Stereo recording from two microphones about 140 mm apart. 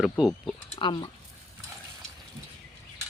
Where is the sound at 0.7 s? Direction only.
35° left (ahead or behind).